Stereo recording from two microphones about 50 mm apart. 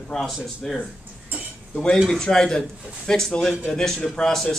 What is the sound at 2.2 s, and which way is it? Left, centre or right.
A man's voice, centre.